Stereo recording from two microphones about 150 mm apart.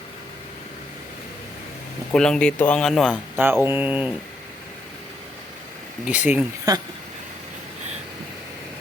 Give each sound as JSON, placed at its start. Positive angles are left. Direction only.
{"t": 2.1, "sound": "speech", "side_deg": 5}
{"t": 3.3, "sound": "speech", "side_deg": -15}
{"t": 6.1, "sound": "speech", "side_deg": -10}
{"t": 6.7, "sound": "speech", "side_deg": -25}